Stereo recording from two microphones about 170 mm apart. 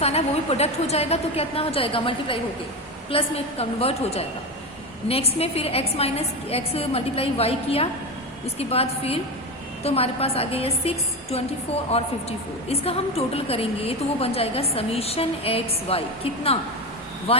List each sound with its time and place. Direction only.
0.0 s a woman's voice: 40° left (ahead or behind)